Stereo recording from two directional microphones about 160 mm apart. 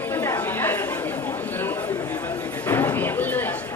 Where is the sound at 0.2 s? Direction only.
15° left (ahead or behind).